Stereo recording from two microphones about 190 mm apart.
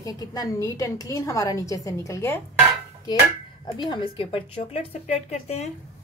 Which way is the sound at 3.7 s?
25° left (ahead or behind).